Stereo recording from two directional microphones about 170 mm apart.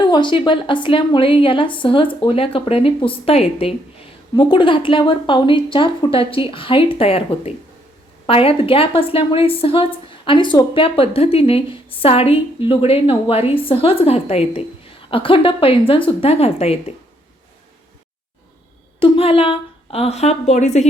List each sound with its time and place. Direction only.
0.1 s a woman's voice: 30° left (ahead or behind)
18.9 s a woman's voice: 30° left (ahead or behind)